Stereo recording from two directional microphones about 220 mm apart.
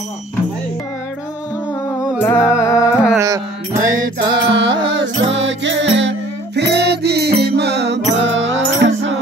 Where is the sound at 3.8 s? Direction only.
40° right (ahead or behind).